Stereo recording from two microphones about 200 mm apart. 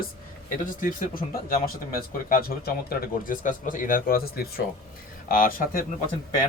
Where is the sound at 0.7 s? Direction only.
45° left (ahead or behind).